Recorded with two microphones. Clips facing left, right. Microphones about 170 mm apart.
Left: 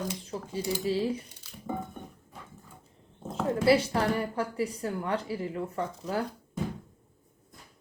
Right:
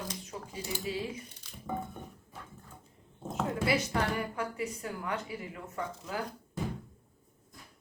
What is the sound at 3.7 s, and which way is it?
A woman's voice, 30° left (ahead or behind).